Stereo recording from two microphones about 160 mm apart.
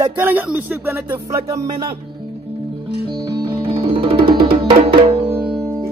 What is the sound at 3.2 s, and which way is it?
Music, 30° right (ahead or behind).